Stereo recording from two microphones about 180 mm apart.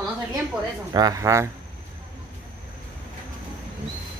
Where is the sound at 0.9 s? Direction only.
20° right (ahead or behind).